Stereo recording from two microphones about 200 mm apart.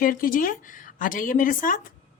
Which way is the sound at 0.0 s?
45° left (ahead or behind).